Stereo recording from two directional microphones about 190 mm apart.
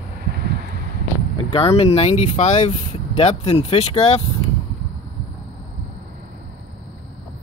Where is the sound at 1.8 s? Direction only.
35° left (ahead or behind).